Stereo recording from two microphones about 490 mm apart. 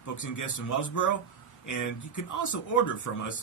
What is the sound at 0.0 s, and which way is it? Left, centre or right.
Speech, left.